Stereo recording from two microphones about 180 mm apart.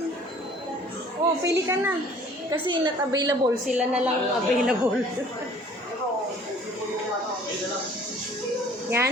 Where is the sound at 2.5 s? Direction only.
25° right (ahead or behind).